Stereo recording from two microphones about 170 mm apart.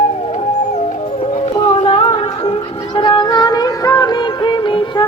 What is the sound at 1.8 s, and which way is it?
Music, 35° left (ahead or behind).